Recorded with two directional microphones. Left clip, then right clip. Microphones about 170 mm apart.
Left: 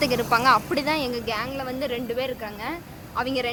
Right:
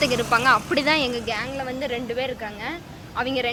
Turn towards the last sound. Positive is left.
turn(degrees=10)  # may be behind; listen again after turning